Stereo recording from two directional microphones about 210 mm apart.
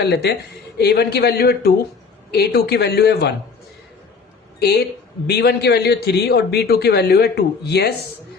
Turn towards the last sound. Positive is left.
turn(degrees=50)  # may be behind; listen again after turning